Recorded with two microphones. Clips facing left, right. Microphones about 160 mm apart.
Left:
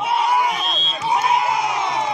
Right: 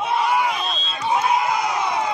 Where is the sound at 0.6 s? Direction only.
10° left (ahead or behind).